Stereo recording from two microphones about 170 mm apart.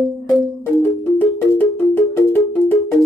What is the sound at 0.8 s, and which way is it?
Music, 10° left (ahead or behind).